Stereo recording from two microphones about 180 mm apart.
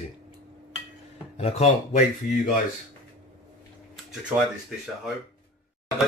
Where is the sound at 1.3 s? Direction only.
35° left (ahead or behind).